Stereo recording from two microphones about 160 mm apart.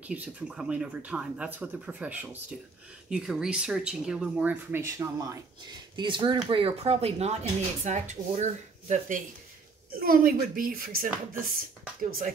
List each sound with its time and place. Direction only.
0.0 s speech: 10° right (ahead or behind); by 9.2 s 50° right (ahead or behind)
9.9 s speech: 70° right (ahead or behind)